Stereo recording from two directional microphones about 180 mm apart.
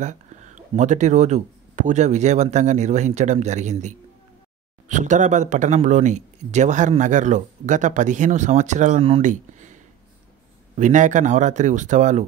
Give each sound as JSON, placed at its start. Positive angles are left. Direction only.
{"t": 0.0, "sound": "speech", "side_deg": -40}
{"t": 10.8, "sound": "speech", "side_deg": -45}